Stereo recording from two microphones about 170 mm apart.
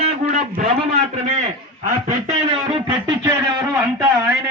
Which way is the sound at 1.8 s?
45° right (ahead or behind).